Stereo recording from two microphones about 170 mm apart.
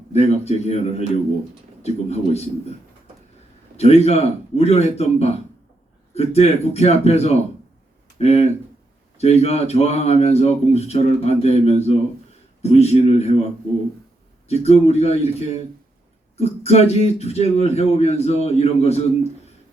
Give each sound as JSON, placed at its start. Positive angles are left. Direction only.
{"t": 0.1, "sound": "speech", "side_deg": 40}
{"t": 3.8, "sound": "speech", "side_deg": 40}